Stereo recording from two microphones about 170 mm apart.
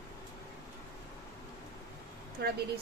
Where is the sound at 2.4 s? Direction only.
70° right (ahead or behind).